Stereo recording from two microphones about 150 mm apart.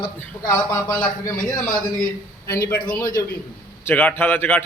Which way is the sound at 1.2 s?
25° left (ahead or behind).